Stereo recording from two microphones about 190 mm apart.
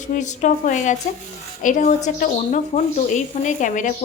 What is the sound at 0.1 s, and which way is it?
Speech, 40° left (ahead or behind).